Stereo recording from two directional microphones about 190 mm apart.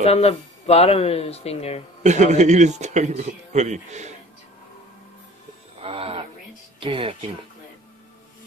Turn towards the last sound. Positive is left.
turn(degrees=-30)  # may be behind; listen again after turning